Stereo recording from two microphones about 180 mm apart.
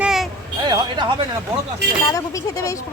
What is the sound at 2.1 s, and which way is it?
Speech, 20° left (ahead or behind).